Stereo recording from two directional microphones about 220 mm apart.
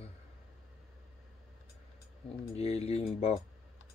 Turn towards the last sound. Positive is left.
turn(degrees=30)  # may be behind; listen again after turning